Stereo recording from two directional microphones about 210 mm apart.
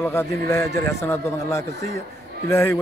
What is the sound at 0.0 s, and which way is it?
A man's voice, 10° left (ahead or behind).